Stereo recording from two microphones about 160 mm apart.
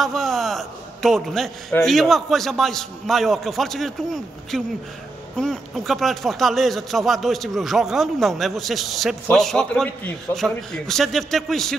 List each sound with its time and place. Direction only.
0.0 s speech: centre (ahead or behind)